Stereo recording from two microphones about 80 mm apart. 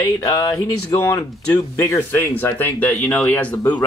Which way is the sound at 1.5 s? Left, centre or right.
Left.